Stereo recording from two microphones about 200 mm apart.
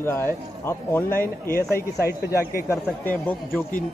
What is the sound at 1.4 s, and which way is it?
Speech, 50° left (ahead or behind).